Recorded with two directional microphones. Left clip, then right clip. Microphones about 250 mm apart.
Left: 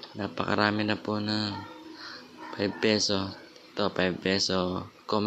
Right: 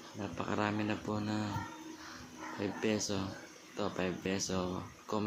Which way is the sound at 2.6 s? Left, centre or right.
Centre.